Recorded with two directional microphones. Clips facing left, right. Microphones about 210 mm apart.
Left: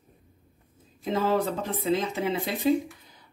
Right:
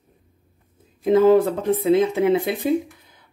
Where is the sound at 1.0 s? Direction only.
55° right (ahead or behind).